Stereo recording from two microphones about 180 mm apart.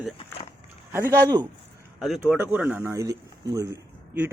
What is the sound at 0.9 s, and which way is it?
Speech, 15° right (ahead or behind).